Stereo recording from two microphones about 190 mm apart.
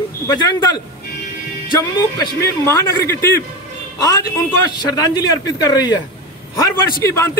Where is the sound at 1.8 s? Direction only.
15° left (ahead or behind).